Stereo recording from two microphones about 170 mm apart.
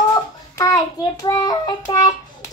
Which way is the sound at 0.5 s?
20° left (ahead or behind).